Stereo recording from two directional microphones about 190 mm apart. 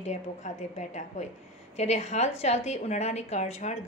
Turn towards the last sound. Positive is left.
turn(degrees=35)  # may be behind; listen again after turning